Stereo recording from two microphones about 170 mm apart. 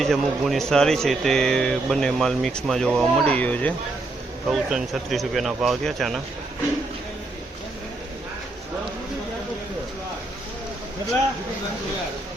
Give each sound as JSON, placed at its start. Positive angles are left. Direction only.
{"t": 0.0, "sound": "speech", "side_deg": 0}